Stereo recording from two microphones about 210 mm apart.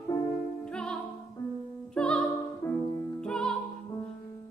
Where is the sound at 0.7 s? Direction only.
5° left (ahead or behind).